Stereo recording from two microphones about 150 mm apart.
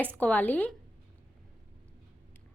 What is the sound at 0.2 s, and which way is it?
Speech, 10° left (ahead or behind).